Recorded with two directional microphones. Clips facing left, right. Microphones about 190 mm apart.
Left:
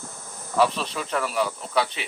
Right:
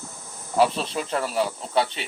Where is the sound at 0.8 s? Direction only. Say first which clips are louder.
Right 1 dB; 30° right (ahead or behind).